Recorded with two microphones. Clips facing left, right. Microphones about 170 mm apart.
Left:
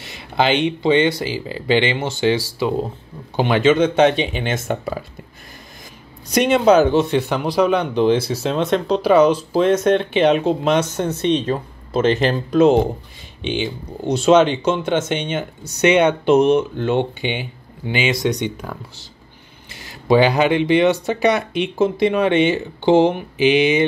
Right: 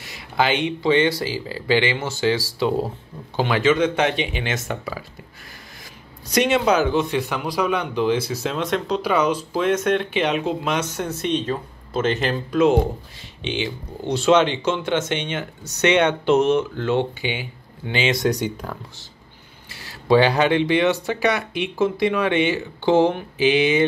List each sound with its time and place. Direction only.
0.0 s speech: 25° left (ahead or behind)
2.6 s speech: 5° right (ahead or behind)
3.3 s speech: 20° left (ahead or behind)
4.3 s speech: 45° left (ahead or behind)
6.3 s speech: 55° left (ahead or behind)
6.6 s speech: 30° left (ahead or behind)
14.8 s speech: 25° left (ahead or behind)
15.6 s speech: 10° left (ahead or behind)
17.8 s speech: 10° left (ahead or behind)
18.1 s speech: centre (ahead or behind)
19.7 s speech: 15° left (ahead or behind)